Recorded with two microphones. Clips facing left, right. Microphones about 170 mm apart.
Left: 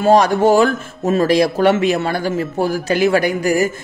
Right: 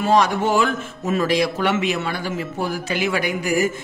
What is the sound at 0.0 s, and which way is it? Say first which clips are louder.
A man's voice: left 6 dB; 40° left (ahead or behind).